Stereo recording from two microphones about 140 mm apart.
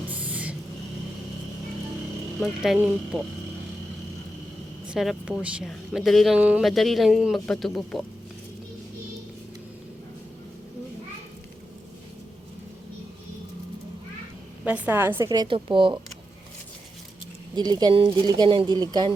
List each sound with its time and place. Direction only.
0.1 s vehicle: 10° right (ahead or behind)
2.4 s speech: centre (ahead or behind)
2.7 s a woman's voice: 15° right (ahead or behind)
4.9 s a woman's voice: 5° right (ahead or behind)
14.6 s a woman's voice: 10° right (ahead or behind); by 16.0 s 35° right (ahead or behind)
17.5 s speech: 30° right (ahead or behind)